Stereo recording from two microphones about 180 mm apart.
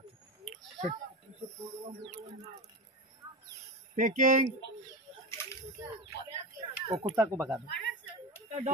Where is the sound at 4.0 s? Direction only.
45° right (ahead or behind).